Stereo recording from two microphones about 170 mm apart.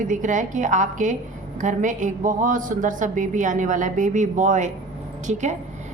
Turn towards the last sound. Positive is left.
turn(degrees=-45)  # may be behind; listen again after turning